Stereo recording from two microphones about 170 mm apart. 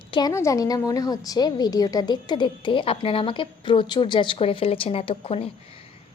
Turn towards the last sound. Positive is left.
turn(degrees=35)  # may be behind; listen again after turning